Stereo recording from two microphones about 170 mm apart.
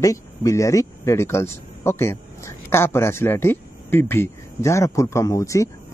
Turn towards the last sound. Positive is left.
turn(degrees=20)  # may be behind; listen again after turning